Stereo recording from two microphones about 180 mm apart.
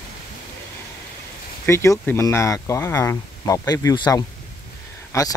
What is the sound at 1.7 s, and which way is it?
Speech, 15° left (ahead or behind).